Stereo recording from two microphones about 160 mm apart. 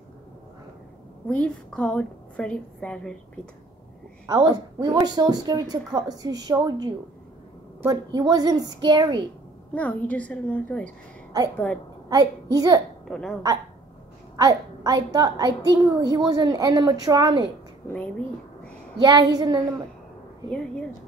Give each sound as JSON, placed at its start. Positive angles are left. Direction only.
{"t": 1.3, "sound": "a woman's voice", "side_deg": 10}
{"t": 4.3, "sound": "speech", "side_deg": -25}
{"t": 9.8, "sound": "a woman's voice", "side_deg": 10}
{"t": 12.1, "sound": "speech", "side_deg": -25}
{"t": 13.1, "sound": "speech", "side_deg": 5}
{"t": 14.3, "sound": "speech", "side_deg": -20}
{"t": 17.8, "sound": "a woman's voice", "side_deg": 15}
{"t": 18.9, "sound": "speech", "side_deg": -25}